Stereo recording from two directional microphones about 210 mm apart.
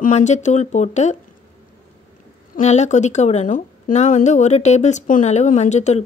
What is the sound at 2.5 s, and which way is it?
Speech, 35° left (ahead or behind).